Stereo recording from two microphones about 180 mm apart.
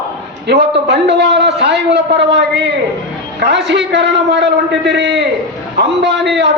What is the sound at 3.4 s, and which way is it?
A man's voice, 70° right (ahead or behind).